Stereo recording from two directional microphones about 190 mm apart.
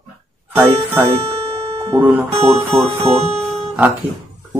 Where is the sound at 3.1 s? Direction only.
35° right (ahead or behind).